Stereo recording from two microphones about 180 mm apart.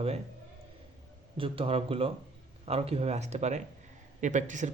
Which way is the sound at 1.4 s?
30° right (ahead or behind).